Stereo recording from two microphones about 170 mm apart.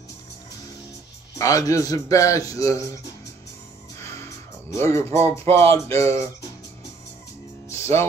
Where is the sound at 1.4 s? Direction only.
20° left (ahead or behind).